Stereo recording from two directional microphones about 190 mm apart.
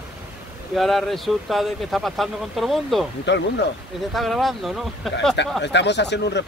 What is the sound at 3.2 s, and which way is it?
Speech, 65° left (ahead or behind).